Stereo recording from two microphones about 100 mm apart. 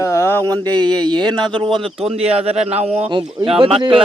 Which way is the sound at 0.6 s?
45° right (ahead or behind).